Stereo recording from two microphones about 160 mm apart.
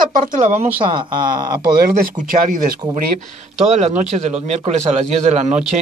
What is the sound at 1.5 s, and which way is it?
Speech, 65° right (ahead or behind).